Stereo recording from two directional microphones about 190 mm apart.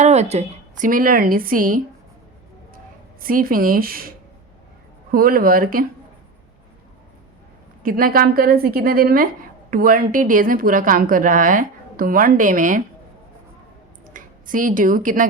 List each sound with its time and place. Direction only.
0.0 s a woman's voice: 35° right (ahead or behind); by 4.1 s 50° right (ahead or behind)
5.1 s a woman's voice: 50° right (ahead or behind)
7.8 s a woman's voice: 45° right (ahead or behind)
14.1 s a woman's voice: 45° right (ahead or behind)